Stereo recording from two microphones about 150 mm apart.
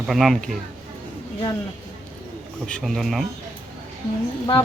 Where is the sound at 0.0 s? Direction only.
Centre (ahead or behind).